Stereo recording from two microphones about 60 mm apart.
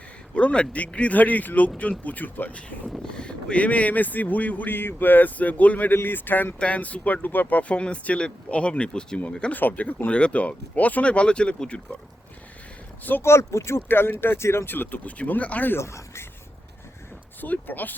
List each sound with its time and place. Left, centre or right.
0.3 s speech: centre
9.5 s speech: left
13.2 s speech: left
13.8 s speech: left
15.8 s speech: left
17.4 s speech: left